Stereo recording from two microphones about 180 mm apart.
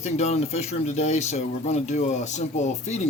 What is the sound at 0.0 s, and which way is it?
Speech, 40° left (ahead or behind).